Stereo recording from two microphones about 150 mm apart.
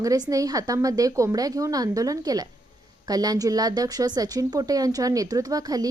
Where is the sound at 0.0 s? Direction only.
20° right (ahead or behind).